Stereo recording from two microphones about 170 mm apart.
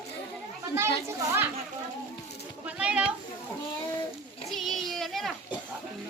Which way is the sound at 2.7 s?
5° right (ahead or behind).